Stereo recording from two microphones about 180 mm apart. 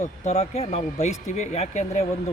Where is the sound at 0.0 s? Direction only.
40° left (ahead or behind).